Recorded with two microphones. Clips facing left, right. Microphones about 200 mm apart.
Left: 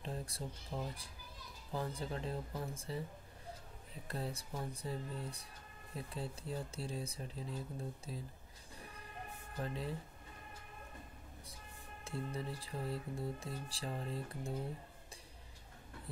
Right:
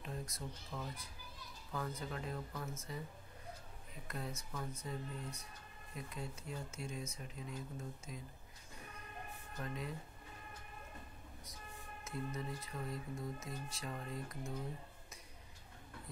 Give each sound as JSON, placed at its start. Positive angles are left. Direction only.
{"t": 0.0, "sound": "a child's voice", "side_deg": 30}
{"t": 4.1, "sound": "speech", "side_deg": 30}
{"t": 9.6, "sound": "speech", "side_deg": 30}
{"t": 12.0, "sound": "speech", "side_deg": 30}